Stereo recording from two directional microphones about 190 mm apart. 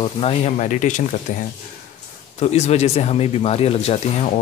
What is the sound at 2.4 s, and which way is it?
Speech, 35° left (ahead or behind).